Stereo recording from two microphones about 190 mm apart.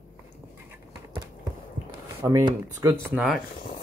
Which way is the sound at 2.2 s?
15° right (ahead or behind).